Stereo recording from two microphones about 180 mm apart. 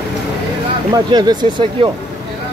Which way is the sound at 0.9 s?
20° right (ahead or behind).